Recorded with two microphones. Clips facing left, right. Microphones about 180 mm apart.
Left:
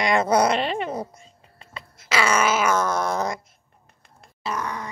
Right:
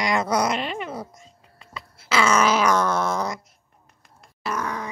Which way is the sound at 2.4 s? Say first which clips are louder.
Right 1 dB; 5° left (ahead or behind).